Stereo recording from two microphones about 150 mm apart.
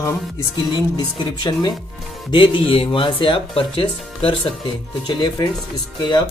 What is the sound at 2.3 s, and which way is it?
Speech, 35° left (ahead or behind).